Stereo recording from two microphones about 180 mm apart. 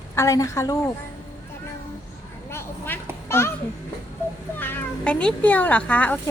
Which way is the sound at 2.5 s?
15° left (ahead or behind).